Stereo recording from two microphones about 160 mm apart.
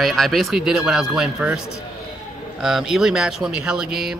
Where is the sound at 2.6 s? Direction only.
5° right (ahead or behind).